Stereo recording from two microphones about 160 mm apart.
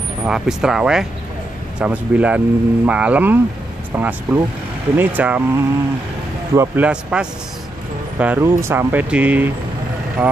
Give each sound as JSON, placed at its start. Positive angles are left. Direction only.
{"t": 0.2, "sound": "speech", "side_deg": -5}
{"t": 6.9, "sound": "speech", "side_deg": -5}